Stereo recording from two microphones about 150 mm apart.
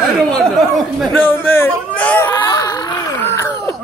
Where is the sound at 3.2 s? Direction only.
15° left (ahead or behind).